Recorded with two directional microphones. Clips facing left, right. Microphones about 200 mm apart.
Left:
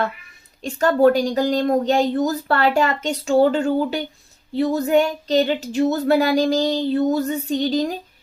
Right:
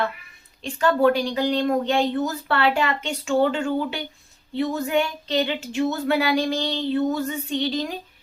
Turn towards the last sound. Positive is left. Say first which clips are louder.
# left 5 dB
turn(degrees=40)  # may be behind; listen again after turning